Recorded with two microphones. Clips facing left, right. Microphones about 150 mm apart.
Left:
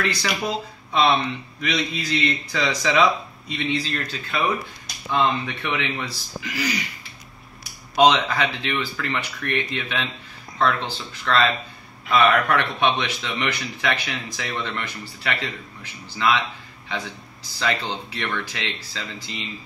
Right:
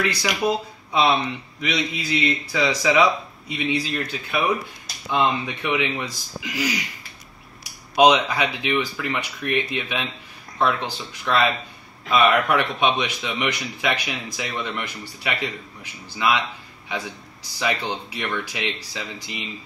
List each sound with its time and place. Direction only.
0.0 s speech: 10° right (ahead or behind)
7.9 s speech: 10° right (ahead or behind)
17.6 s speech: 10° right (ahead or behind)